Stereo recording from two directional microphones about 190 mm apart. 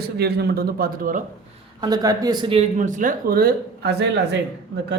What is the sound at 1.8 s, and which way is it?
Speech, 20° right (ahead or behind).